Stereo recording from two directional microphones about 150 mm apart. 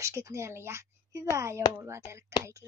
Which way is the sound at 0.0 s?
20° right (ahead or behind).